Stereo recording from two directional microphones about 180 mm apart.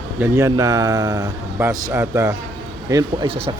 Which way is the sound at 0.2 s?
15° right (ahead or behind).